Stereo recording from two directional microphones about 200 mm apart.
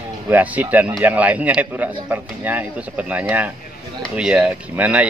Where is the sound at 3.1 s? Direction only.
5° right (ahead or behind).